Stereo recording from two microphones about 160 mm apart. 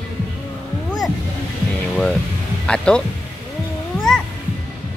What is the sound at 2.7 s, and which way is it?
Speech, 5° left (ahead or behind).